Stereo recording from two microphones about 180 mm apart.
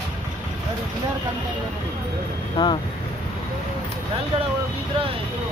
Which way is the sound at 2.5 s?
25° left (ahead or behind).